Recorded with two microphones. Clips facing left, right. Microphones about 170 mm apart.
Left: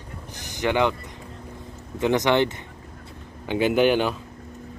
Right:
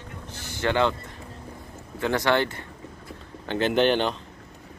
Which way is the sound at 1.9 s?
20° left (ahead or behind).